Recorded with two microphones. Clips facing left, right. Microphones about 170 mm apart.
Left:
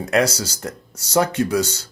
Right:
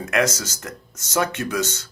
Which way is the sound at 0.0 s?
35° left (ahead or behind).